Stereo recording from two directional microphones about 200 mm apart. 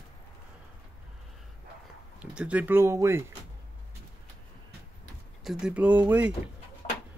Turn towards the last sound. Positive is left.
turn(degrees=30)  # may be behind; listen again after turning